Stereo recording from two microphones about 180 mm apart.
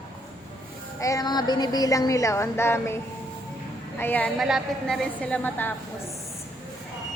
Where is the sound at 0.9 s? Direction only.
20° left (ahead or behind).